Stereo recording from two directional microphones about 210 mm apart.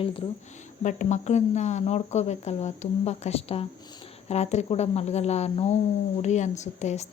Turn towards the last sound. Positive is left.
turn(degrees=35)  # may be behind; listen again after turning